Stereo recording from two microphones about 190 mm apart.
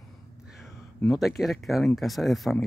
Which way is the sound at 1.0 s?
Centre (ahead or behind).